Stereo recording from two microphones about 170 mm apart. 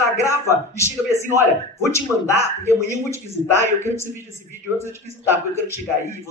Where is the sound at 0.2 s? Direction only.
15° left (ahead or behind).